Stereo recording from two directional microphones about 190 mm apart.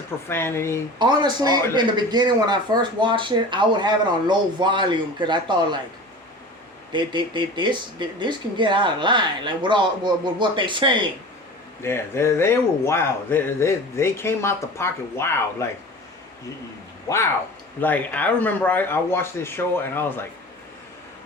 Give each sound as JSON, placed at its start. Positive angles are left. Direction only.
{"t": 0.3, "sound": "a man's voice", "side_deg": 10}
{"t": 0.9, "sound": "a man's voice", "side_deg": -25}
{"t": 6.9, "sound": "a man's voice", "side_deg": -25}
{"t": 11.8, "sound": "a man's voice", "side_deg": 15}
{"t": 17.7, "sound": "a man's voice", "side_deg": 10}